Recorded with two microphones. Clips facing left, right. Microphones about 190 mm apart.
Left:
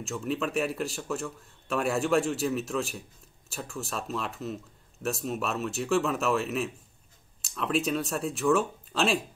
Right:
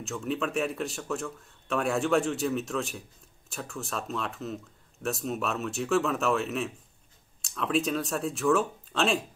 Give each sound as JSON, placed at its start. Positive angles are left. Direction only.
{"t": 0.0, "sound": "speech", "side_deg": 0}